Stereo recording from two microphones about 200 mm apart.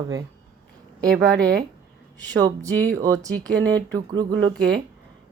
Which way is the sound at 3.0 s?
15° right (ahead or behind).